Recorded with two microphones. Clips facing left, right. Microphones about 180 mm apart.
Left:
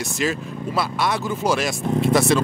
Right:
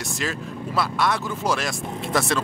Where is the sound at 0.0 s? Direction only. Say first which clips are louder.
Left 5 dB; 5° left (ahead or behind).